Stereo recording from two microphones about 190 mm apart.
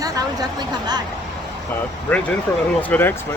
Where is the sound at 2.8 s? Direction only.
10° left (ahead or behind).